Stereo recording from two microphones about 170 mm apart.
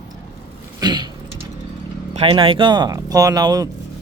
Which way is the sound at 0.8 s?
25° right (ahead or behind).